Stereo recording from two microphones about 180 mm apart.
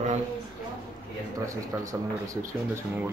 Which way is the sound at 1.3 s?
20° right (ahead or behind).